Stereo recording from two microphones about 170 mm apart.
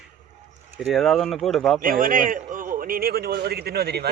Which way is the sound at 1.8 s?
55° right (ahead or behind).